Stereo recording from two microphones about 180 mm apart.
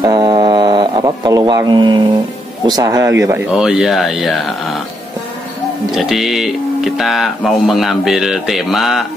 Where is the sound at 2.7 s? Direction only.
20° right (ahead or behind).